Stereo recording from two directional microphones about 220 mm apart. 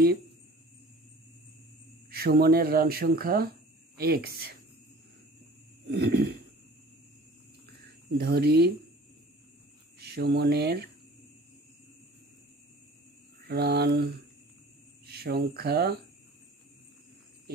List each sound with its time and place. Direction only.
2.0 s speech: 45° right (ahead or behind)
5.9 s speech: 45° right (ahead or behind)
7.8 s speech: 45° right (ahead or behind)
9.9 s speech: 45° right (ahead or behind)
13.5 s speech: 45° right (ahead or behind)
15.0 s speech: 45° right (ahead or behind)